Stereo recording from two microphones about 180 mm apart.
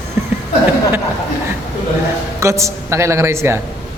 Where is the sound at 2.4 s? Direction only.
15° right (ahead or behind).